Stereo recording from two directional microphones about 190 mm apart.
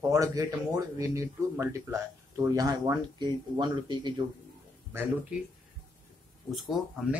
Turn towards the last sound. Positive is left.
turn(degrees=0)  # may be behind; listen again after turning